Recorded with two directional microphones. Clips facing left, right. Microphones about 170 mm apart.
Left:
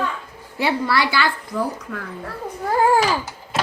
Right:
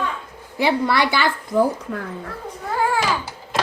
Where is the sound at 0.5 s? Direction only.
20° right (ahead or behind).